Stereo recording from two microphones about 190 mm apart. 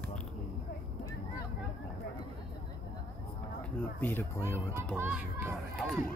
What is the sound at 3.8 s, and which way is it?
Speech, 10° left (ahead or behind).